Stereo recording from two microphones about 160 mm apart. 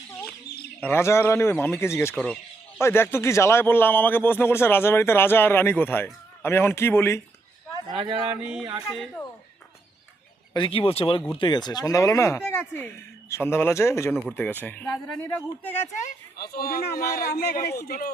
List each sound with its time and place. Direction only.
0.8 s a man's voice: 15° left (ahead or behind)
2.1 s speech: 5° left (ahead or behind)
2.7 s a man's voice: 15° left (ahead or behind)
7.9 s speech: 30° right (ahead or behind)
8.3 s speech: 5° right (ahead or behind)
10.5 s a man's voice: 35° left (ahead or behind); by 15.7 s 10° left (ahead or behind)
16.4 s speech: 70° left (ahead or behind)